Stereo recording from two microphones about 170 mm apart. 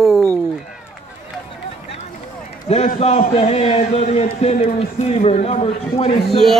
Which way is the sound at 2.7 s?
40° left (ahead or behind).